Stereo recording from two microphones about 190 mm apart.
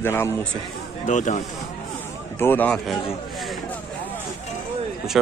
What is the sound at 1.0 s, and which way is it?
Speech, 40° left (ahead or behind).